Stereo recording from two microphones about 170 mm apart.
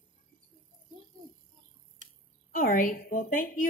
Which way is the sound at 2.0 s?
45° right (ahead or behind).